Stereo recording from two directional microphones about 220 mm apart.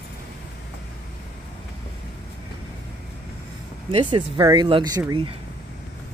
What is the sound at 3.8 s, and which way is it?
Speech, 25° right (ahead or behind).